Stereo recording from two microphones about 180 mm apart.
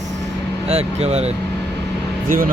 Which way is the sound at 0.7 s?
35° right (ahead or behind).